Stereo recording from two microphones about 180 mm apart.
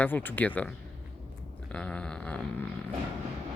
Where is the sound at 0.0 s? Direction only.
10° left (ahead or behind).